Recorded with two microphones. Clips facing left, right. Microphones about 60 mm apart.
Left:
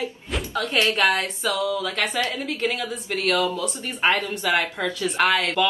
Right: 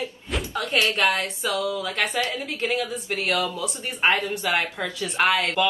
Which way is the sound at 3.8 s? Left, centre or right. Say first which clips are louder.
Right 1 dB; right.